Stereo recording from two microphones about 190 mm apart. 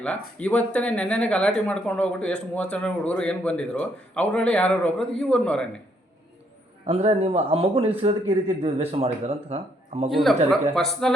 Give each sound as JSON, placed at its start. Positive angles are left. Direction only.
{"t": 0.0, "sound": "speech", "side_deg": 5}
{"t": 6.8, "sound": "a man's voice", "side_deg": -35}
{"t": 10.1, "sound": "speech", "side_deg": 0}